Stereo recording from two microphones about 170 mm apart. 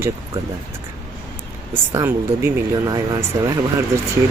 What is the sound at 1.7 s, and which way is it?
Speech, 15° right (ahead or behind).